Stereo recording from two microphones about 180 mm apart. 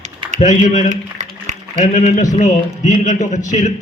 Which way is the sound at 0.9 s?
40° right (ahead or behind).